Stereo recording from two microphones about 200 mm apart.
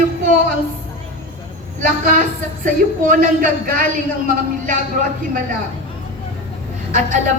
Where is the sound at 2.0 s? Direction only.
45° right (ahead or behind).